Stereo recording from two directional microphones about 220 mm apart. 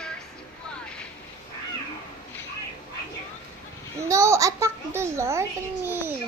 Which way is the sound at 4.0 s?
15° right (ahead or behind).